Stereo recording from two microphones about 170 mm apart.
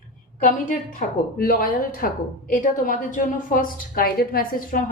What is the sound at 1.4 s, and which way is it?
A woman's voice, 60° left (ahead or behind).